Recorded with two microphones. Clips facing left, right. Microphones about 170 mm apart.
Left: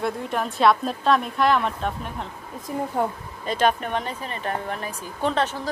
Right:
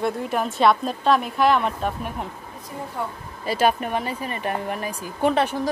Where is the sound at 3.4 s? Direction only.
5° right (ahead or behind).